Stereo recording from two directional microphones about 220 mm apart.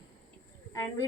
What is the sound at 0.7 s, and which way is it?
Speech, 15° left (ahead or behind).